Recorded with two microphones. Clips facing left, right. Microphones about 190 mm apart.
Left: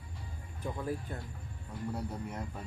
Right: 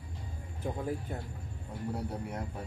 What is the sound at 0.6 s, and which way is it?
Speech, 25° right (ahead or behind).